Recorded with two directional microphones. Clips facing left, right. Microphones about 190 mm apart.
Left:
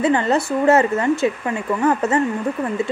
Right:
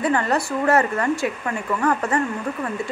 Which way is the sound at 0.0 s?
25° left (ahead or behind).